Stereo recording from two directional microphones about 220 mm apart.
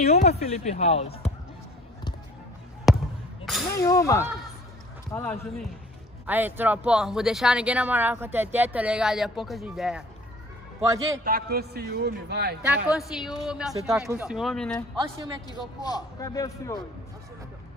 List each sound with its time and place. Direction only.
0.0 s speech: 30° left (ahead or behind)
2.9 s basketball bounce: centre (ahead or behind)
3.8 s a man's voice: 15° left (ahead or behind)
6.2 s speech: 10° right (ahead or behind)
10.9 s speech: 15° right (ahead or behind)
11.2 s a man's voice: 45° right (ahead or behind)
12.8 s speech: centre (ahead or behind)
15.0 s speech: 15° right (ahead or behind)
15.4 s a man's voice: 20° left (ahead or behind)